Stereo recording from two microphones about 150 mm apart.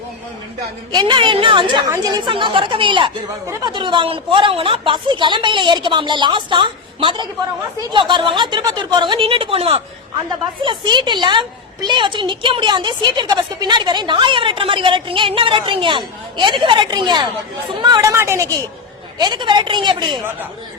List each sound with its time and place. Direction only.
0.9 s a woman's voice: 30° right (ahead or behind)
19.2 s a woman's voice: 30° right (ahead or behind)